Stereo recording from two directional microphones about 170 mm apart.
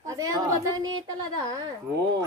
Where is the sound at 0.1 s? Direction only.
20° right (ahead or behind).